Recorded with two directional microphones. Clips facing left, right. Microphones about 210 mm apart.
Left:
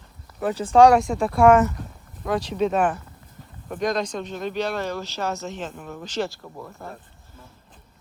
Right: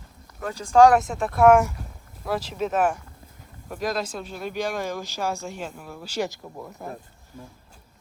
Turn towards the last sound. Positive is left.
turn(degrees=-15)  # may be behind; listen again after turning